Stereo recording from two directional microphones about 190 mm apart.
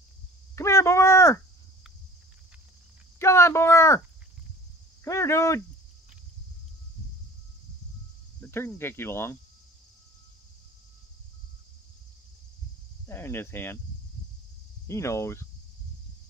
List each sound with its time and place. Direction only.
0.6 s a sound: 15° left (ahead or behind)
3.2 s a sound: 15° left (ahead or behind)
5.0 s speech: 15° left (ahead or behind)
8.4 s speech: 10° left (ahead or behind)
13.0 s speech: 10° left (ahead or behind)
14.9 s speech: 15° left (ahead or behind)